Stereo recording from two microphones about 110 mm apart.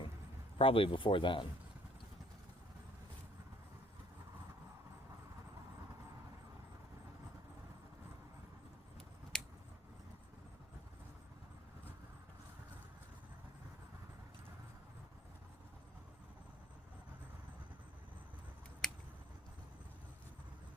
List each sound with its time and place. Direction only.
0.6 s speech: 55° left (ahead or behind)
9.3 s scissors: 5° left (ahead or behind)
18.8 s a sound: 5° left (ahead or behind)